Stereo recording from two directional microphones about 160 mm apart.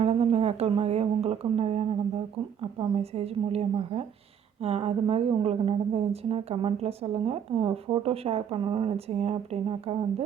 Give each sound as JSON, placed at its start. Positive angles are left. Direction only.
{"t": 0.0, "sound": "speech", "side_deg": -40}